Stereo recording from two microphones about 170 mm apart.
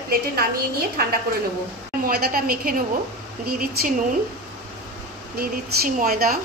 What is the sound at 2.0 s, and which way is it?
A woman's voice, 60° right (ahead or behind).